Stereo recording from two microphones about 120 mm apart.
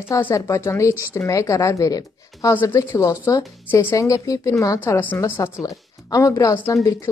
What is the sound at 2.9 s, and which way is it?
A woman's voice, 30° left (ahead or behind).